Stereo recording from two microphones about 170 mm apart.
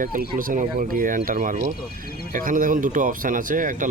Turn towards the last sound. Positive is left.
turn(degrees=-50)  # may be behind; listen again after turning